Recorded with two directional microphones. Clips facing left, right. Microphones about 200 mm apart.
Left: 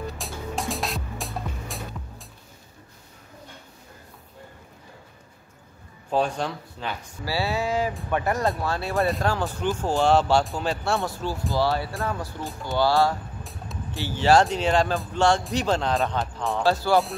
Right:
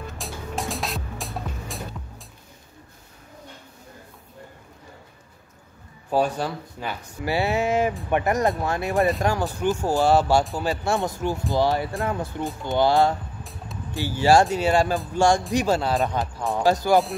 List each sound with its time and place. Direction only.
0.2 s music: centre (ahead or behind)
6.0 s speech: 5° right (ahead or behind)
7.2 s speech: 20° right (ahead or behind)
13.4 s music: centre (ahead or behind)
14.0 s speech: 10° right (ahead or behind)
16.5 s speech: 15° right (ahead or behind)